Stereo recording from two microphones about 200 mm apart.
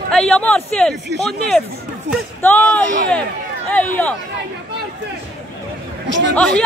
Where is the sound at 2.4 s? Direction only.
10° left (ahead or behind).